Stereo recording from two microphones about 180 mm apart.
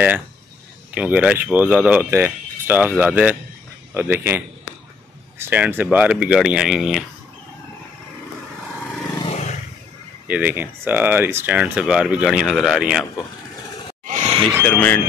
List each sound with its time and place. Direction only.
0.9 s speech: 10° right (ahead or behind)
9.2 s roar: 40° left (ahead or behind)
10.2 s speech: 10° right (ahead or behind)
14.0 s a sound: 40° right (ahead or behind)
14.6 s speech: 10° left (ahead or behind)